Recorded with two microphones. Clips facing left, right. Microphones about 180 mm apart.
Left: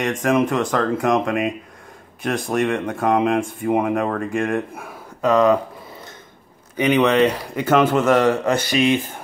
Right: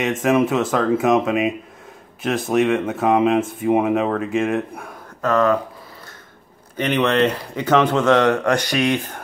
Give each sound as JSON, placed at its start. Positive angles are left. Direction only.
{"t": 0.0, "sound": "speech", "side_deg": -5}
{"t": 5.2, "sound": "speech", "side_deg": 15}
{"t": 6.8, "sound": "speech", "side_deg": 10}